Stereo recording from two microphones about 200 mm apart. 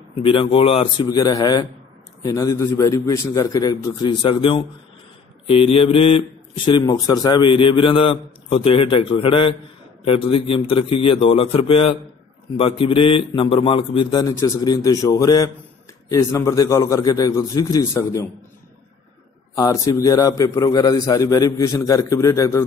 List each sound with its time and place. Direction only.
0.2 s a man's voice: 25° left (ahead or behind)
19.5 s a man's voice: 15° left (ahead or behind)